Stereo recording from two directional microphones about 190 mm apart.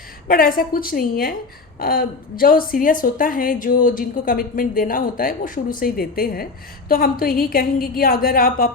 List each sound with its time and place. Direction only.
0.3 s a woman's voice: 50° left (ahead or behind)